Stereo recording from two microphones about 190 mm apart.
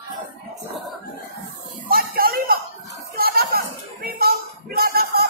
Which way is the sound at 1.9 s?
50° right (ahead or behind).